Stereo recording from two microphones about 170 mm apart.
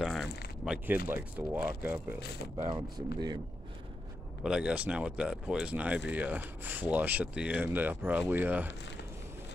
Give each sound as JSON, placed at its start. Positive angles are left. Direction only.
{"t": 0.0, "sound": "a sound", "side_deg": 0}
{"t": 1.0, "sound": "speech", "side_deg": -10}
{"t": 2.6, "sound": "speech", "side_deg": -25}
{"t": 4.4, "sound": "speech", "side_deg": -5}